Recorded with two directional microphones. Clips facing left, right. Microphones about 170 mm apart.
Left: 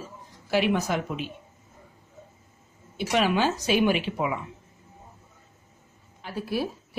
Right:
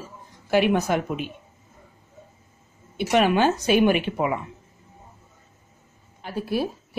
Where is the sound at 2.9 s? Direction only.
55° right (ahead or behind).